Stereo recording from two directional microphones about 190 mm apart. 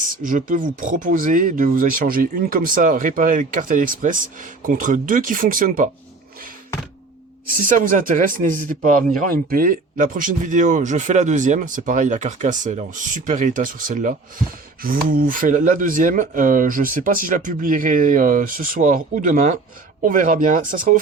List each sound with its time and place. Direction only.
0.0 s speech: 45° right (ahead or behind)
7.5 s speech: 45° right (ahead or behind)